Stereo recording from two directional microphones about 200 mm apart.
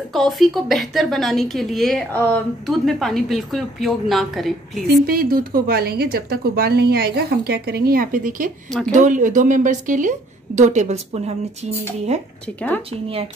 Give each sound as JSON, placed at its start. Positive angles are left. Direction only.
{"t": 0.1, "sound": "a woman's voice", "side_deg": 0}
{"t": 5.0, "sound": "a woman's voice", "side_deg": -45}